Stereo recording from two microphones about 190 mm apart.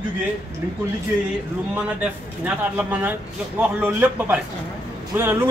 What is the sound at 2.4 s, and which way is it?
Speech, 10° right (ahead or behind).